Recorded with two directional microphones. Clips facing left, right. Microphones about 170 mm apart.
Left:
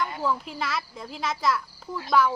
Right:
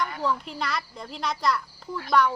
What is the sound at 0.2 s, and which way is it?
Speech, 5° left (ahead or behind).